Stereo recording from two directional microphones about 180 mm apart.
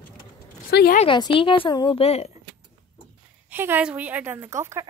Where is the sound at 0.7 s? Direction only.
65° left (ahead or behind).